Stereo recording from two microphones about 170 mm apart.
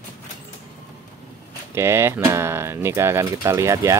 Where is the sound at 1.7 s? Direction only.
15° right (ahead or behind).